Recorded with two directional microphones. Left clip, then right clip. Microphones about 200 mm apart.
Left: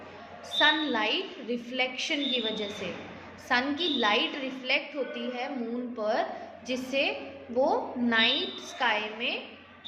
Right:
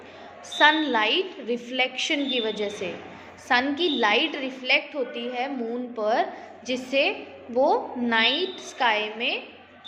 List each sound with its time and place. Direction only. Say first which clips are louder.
0.6 s a woman's voice: right 5 dB; 20° right (ahead or behind)